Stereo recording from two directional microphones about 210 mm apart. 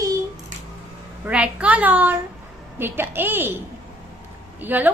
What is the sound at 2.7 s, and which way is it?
A woman's voice, 10° right (ahead or behind).